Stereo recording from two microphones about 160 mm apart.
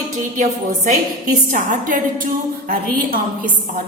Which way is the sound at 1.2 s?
55° right (ahead or behind).